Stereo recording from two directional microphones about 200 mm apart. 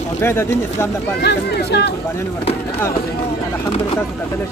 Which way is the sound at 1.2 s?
55° left (ahead or behind).